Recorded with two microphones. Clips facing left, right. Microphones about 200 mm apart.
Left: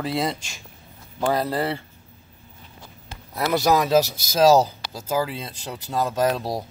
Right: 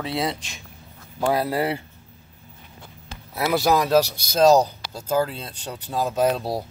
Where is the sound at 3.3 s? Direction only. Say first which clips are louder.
Even; 5° right (ahead or behind).